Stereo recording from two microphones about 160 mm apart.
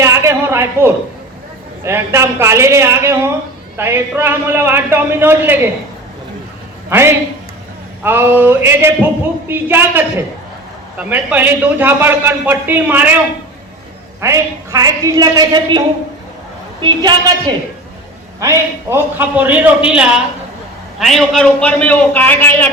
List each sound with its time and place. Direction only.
0.0 s a sound: 15° right (ahead or behind)
1.8 s a man's voice: 15° right (ahead or behind)
6.9 s a man's voice: 15° right (ahead or behind)
14.2 s a woman's voice: 20° right (ahead or behind)
16.8 s a woman's voice: 25° right (ahead or behind); by 22.7 s 10° left (ahead or behind)